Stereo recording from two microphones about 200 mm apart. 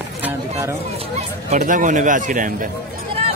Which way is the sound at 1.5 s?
40° right (ahead or behind).